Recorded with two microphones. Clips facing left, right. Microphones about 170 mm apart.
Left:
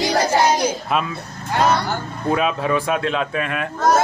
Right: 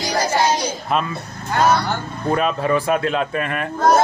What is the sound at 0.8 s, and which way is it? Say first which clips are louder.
Speech: right 1 dB; centre (ahead or behind).